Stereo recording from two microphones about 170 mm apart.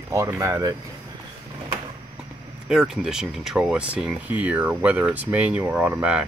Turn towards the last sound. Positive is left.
turn(degrees=-10)  # may be behind; listen again after turning